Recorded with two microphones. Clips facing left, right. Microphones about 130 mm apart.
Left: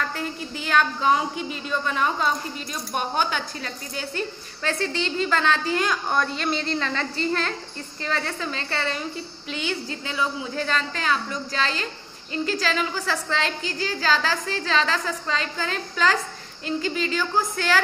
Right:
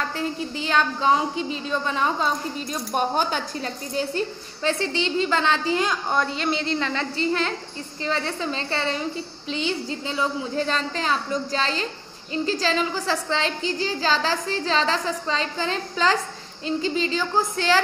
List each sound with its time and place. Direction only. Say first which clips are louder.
0.1 s a woman's voice: right 3 dB; 25° right (ahead or behind)